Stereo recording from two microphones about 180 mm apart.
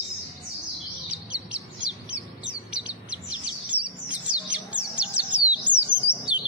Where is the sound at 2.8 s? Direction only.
5° right (ahead or behind).